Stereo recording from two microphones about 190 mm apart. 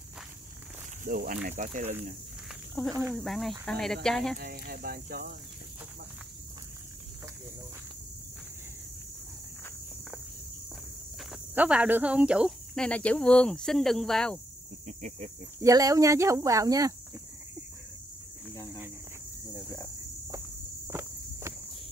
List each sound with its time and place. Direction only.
1.0 s speech: 45° right (ahead or behind)
2.8 s speech: centre (ahead or behind)
4.4 s speech: 55° right (ahead or behind)
11.1 s speech: 5° right (ahead or behind)
14.9 s snake: 40° right (ahead or behind)
15.6 s speech: 15° right (ahead or behind)
18.5 s cricket: 15° left (ahead or behind)
20.2 s walk: 15° right (ahead or behind)